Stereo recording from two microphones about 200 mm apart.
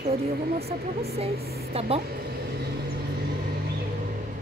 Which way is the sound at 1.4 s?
50° right (ahead or behind).